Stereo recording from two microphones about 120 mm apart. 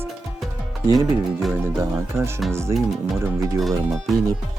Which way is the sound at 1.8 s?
20° right (ahead or behind).